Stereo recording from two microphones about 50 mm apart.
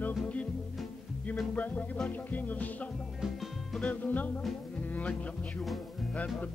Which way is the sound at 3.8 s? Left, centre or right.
Left.